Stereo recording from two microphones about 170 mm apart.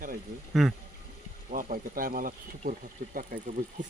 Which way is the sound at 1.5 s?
55° right (ahead or behind).